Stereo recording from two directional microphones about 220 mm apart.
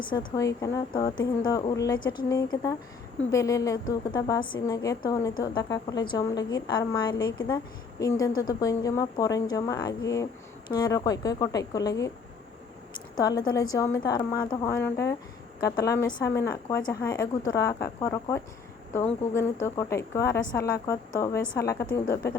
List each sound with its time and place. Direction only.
0.1 s a woman's voice: 20° left (ahead or behind)
13.1 s a woman's voice: 20° left (ahead or behind)